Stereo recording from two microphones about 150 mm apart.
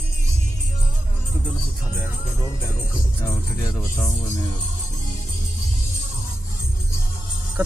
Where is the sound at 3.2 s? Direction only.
20° left (ahead or behind).